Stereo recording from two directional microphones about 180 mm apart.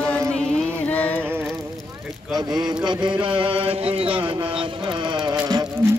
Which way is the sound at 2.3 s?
20° right (ahead or behind).